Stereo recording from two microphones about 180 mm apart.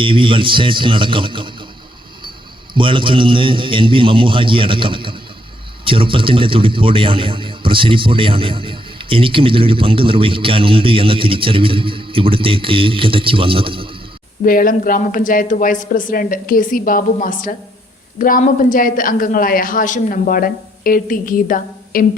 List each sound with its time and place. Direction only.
0.0 s a man's voice: 30° right (ahead or behind)
2.7 s a man's voice: 30° right (ahead or behind)
14.4 s a woman's voice: 50° left (ahead or behind)